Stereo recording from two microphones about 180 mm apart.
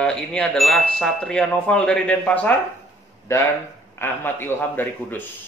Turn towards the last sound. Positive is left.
turn(degrees=10)  # may be behind; listen again after turning